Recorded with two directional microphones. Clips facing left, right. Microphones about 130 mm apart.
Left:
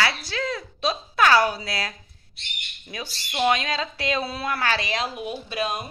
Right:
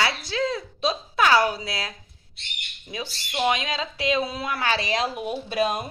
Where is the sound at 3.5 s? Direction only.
15° right (ahead or behind).